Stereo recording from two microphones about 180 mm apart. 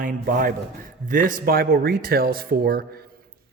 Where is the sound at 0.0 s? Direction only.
50° right (ahead or behind).